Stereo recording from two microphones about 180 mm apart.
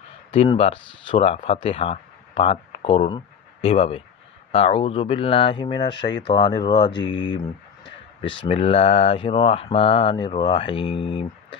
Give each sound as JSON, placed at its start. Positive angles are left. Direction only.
{"t": 0.3, "sound": "speech", "side_deg": 35}